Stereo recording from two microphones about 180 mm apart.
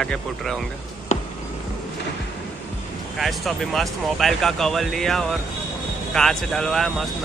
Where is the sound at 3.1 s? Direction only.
Centre (ahead or behind).